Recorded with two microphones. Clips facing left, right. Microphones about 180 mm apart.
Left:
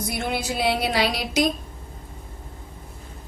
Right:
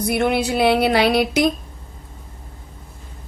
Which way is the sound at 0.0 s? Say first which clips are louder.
Right 8 dB; 60° right (ahead or behind).